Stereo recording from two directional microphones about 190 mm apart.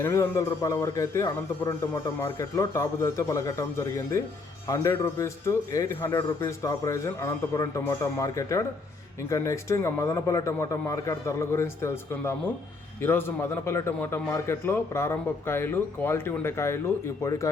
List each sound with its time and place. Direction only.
0.0 s a man's voice: 15° left (ahead or behind)